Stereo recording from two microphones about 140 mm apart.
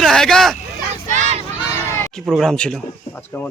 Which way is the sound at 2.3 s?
Centre (ahead or behind).